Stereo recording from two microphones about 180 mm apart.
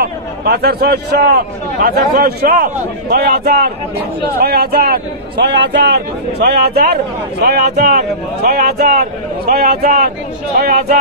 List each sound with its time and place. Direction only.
0.0 s a man's voice: 60° right (ahead or behind)
10.6 s speech: 40° right (ahead or behind)